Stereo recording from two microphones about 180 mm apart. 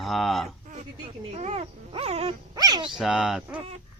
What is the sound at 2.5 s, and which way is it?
Speech, 20° right (ahead or behind).